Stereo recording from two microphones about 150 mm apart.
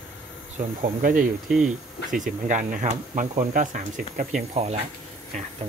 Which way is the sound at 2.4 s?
55° right (ahead or behind).